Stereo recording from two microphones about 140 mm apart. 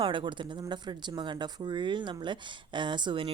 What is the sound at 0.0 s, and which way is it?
A woman's voice, 35° right (ahead or behind).